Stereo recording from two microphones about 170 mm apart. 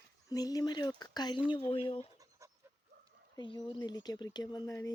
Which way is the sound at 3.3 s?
25° left (ahead or behind).